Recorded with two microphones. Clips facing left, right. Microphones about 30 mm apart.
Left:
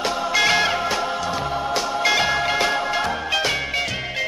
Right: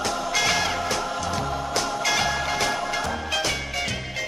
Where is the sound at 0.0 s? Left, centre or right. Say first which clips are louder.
Left 4 dB; left.